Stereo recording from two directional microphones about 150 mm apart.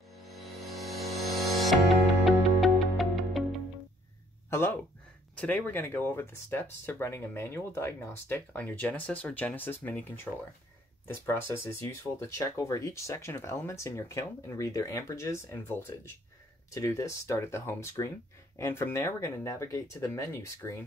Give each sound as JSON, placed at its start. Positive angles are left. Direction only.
{"t": 0.3, "sound": "music", "side_deg": 0}
{"t": 4.5, "sound": "a sound", "side_deg": 15}
{"t": 5.7, "sound": "speech", "side_deg": 15}
{"t": 11.2, "sound": "speech", "side_deg": 15}